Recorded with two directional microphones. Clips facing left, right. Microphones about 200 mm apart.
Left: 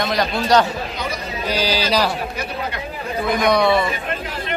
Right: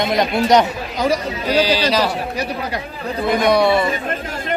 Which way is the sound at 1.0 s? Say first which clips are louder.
Right 7 dB; 80° right.